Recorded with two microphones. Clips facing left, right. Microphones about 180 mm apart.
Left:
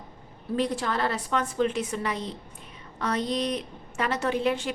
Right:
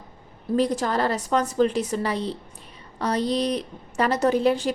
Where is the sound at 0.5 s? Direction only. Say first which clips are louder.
Right 5 dB; 40° right (ahead or behind).